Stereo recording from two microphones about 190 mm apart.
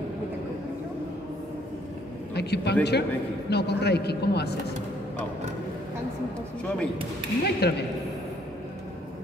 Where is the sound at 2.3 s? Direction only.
60° left (ahead or behind).